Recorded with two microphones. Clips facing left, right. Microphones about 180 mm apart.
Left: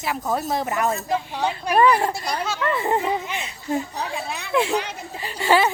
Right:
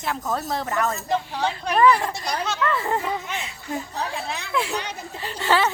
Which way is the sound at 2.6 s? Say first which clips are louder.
Left 4 dB; 20° left (ahead or behind).